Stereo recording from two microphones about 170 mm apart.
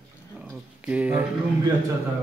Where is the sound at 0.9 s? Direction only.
10° right (ahead or behind).